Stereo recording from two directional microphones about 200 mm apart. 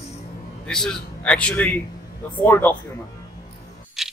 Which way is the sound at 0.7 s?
5° left (ahead or behind).